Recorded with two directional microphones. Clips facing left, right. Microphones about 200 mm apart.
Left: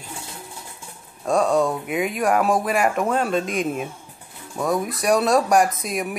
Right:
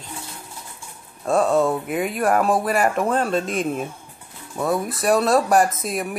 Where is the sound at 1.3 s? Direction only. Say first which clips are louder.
Right 1 dB; 5° right (ahead or behind).